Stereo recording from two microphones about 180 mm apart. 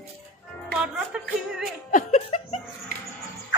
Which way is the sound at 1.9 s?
40° left (ahead or behind).